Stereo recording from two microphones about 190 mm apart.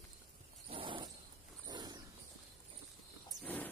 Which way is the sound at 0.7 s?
25° right (ahead or behind).